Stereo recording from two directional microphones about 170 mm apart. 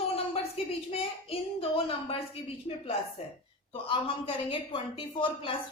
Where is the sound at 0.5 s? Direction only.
35° left (ahead or behind).